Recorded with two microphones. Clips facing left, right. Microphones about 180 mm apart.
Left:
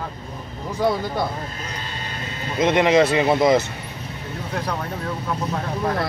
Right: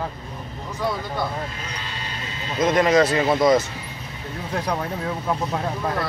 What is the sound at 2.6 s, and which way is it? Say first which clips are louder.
Speech: left 1 dB; 25° left (ahead or behind).